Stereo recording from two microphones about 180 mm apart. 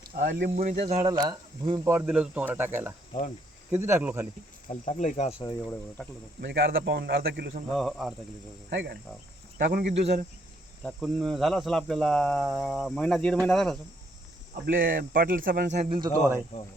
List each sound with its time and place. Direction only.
0.1 s speech: 50° right (ahead or behind)
1.0 s speech: 25° right (ahead or behind)
4.7 s speech: 40° left (ahead or behind)
6.0 s speech: 5° left (ahead or behind)
6.4 s speech: 70° right (ahead or behind)
7.7 s speech: centre (ahead or behind)
8.7 s speech: 70° right (ahead or behind)
9.6 s speech: 60° right (ahead or behind)
10.8 s speech: centre (ahead or behind)
14.5 s speech: 55° right (ahead or behind)
15.7 s speech: 40° right (ahead or behind)
16.0 s speech: 20° right (ahead or behind)